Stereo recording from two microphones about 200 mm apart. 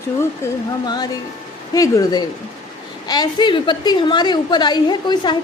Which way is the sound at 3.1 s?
20° left (ahead or behind).